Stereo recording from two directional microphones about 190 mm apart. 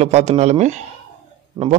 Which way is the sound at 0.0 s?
35° right (ahead or behind).